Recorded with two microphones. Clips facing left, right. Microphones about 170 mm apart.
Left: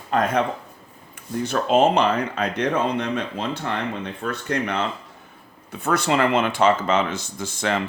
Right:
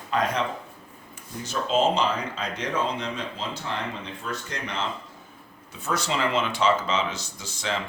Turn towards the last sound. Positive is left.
turn(degrees=55)  # may be behind; listen again after turning